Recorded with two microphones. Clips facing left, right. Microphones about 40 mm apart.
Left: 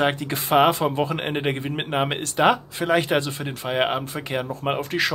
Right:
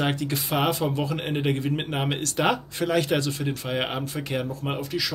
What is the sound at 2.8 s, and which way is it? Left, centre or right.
Speech, left.